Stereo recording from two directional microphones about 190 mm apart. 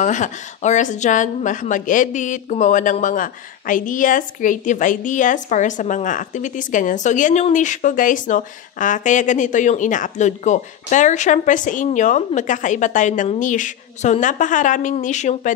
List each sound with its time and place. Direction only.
0.0 s a woman's voice: 40° left (ahead or behind)